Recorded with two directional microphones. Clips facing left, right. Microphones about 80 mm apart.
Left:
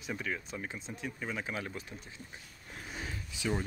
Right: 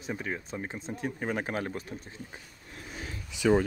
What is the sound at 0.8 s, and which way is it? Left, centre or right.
Speech, right.